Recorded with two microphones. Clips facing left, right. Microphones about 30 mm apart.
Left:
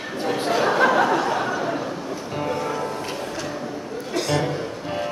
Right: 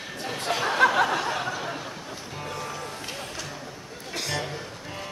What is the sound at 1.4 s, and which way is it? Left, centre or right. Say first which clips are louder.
Speech: left 7 dB; left.